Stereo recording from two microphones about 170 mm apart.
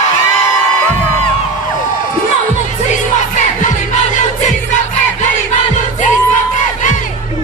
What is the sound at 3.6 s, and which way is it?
Music, 45° left (ahead or behind).